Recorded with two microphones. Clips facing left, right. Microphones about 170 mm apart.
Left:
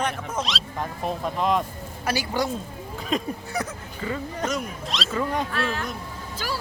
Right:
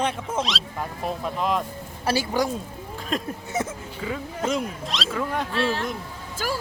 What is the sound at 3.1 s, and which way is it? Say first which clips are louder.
Speech: even; centre (ahead or behind).